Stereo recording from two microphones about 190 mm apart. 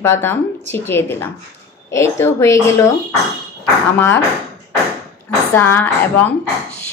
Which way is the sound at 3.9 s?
10° left (ahead or behind).